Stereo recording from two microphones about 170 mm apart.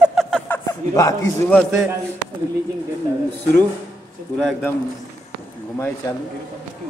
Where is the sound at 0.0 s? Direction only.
Centre (ahead or behind).